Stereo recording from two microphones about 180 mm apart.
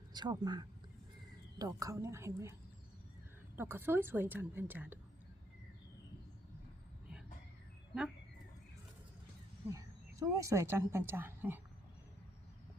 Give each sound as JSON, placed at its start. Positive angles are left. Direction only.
{"t": 0.1, "sound": "a woman's voice", "side_deg": -25}
{"t": 9.6, "sound": "a woman's voice", "side_deg": -15}